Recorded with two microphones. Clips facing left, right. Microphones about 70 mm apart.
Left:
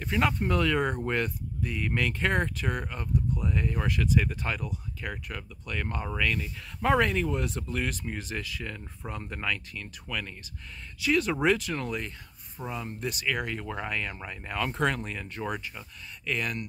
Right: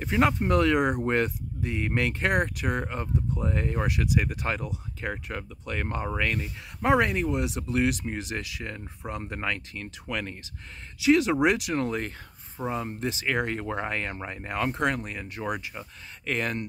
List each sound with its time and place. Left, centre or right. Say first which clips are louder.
0.0 s speech: right 3 dB; right
3.8 s speech: left 1 dB; centre; by 6.5 s right
6.8 s speech: right 2 dB; centre
11.7 s speech: right 5 dB; right
14.7 s speech: right 1 dB; centre
16.3 s speech: right 3 dB; right